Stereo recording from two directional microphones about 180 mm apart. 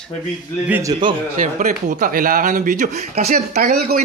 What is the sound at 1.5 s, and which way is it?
Speech, 45° right (ahead or behind).